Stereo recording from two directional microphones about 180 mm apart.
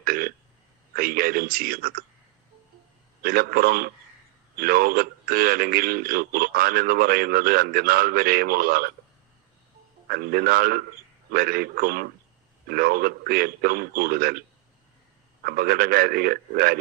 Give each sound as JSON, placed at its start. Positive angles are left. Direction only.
{"t": 0.0, "sound": "a man's voice", "side_deg": -55}
{"t": 3.2, "sound": "a man's voice", "side_deg": -55}
{"t": 10.1, "sound": "a man's voice", "side_deg": -55}
{"t": 15.4, "sound": "a man's voice", "side_deg": -55}